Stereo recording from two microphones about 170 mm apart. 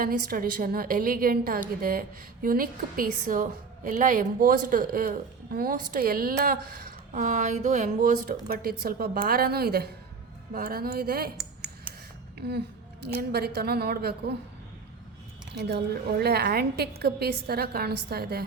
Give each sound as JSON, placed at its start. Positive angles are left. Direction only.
{"t": 0.0, "sound": "a woman's voice", "side_deg": -55}
{"t": 11.3, "sound": "a sound", "side_deg": -5}
{"t": 12.4, "sound": "a woman's voice", "side_deg": -75}
{"t": 15.5, "sound": "a woman's voice", "side_deg": -70}